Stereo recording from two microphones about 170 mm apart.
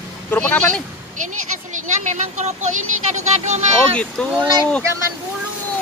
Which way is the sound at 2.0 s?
45° right (ahead or behind).